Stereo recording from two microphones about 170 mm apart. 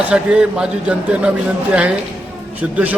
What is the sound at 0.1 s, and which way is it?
A man's voice, 5° right (ahead or behind).